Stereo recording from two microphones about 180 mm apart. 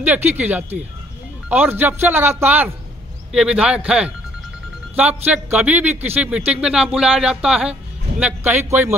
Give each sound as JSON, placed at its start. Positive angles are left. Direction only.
{"t": 0.0, "sound": "a man's voice", "side_deg": -10}